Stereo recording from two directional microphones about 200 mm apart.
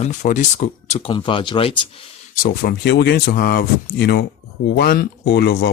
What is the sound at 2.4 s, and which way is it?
Speech, 50° left (ahead or behind).